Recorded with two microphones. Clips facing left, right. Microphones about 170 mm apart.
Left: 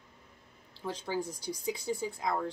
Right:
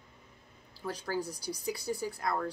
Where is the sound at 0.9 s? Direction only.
20° left (ahead or behind).